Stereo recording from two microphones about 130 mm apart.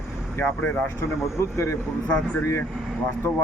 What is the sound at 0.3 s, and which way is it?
Speech, 15° left (ahead or behind).